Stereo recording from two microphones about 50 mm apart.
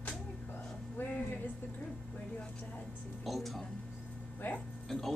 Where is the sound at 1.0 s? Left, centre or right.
Left.